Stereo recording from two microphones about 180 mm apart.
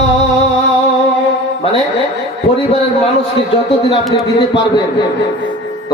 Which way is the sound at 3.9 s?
30° left (ahead or behind).